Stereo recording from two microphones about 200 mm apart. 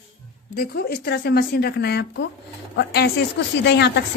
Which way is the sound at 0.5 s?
50° left (ahead or behind).